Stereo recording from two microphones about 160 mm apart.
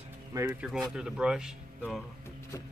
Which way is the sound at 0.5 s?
5° right (ahead or behind).